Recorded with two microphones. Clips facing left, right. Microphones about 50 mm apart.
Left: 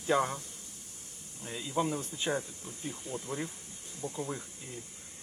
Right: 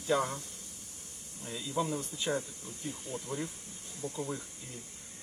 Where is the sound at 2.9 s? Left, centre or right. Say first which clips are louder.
Left 1 dB; centre.